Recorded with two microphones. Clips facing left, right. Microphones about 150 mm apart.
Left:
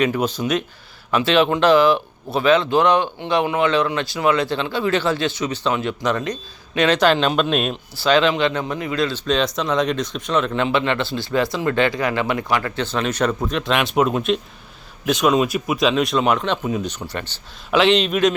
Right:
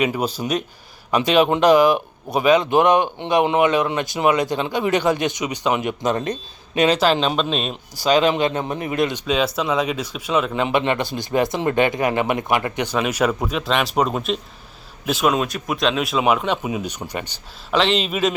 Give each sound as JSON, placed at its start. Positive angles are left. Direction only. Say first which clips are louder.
{"t": 0.4, "sound": "speech", "louder": "left 2 dB", "side_deg": -25}
{"t": 1.1, "sound": "speech", "louder": "right 1 dB", "side_deg": -15}
{"t": 6.7, "sound": "speech", "louder": "left 1 dB", "side_deg": -10}
{"t": 8.0, "sound": "speech", "louder": "even", "side_deg": -15}
{"t": 9.2, "sound": "speech", "louder": "even", "side_deg": -5}
{"t": 17.7, "sound": "speech", "louder": "left 3 dB", "side_deg": 0}